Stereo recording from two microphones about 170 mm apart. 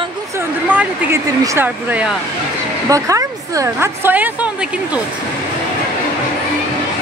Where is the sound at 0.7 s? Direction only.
10° right (ahead or behind).